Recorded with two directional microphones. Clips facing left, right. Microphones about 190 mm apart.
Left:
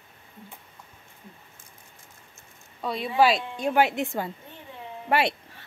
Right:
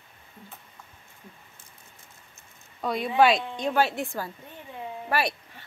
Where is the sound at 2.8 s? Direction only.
Centre (ahead or behind); by 5.3 s 25° left (ahead or behind).